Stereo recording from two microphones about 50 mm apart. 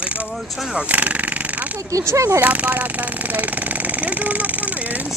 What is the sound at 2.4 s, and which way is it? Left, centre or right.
Speech, right.